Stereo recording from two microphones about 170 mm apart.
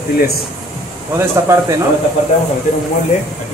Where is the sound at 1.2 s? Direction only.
15° right (ahead or behind).